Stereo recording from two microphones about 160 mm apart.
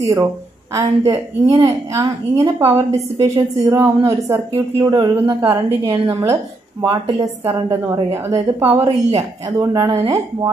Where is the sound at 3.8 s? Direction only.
15° right (ahead or behind).